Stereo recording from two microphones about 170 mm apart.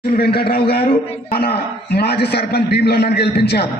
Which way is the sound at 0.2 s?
65° left (ahead or behind).